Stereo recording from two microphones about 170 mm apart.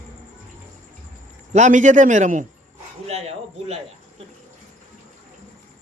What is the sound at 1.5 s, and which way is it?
Speech, 45° right (ahead or behind).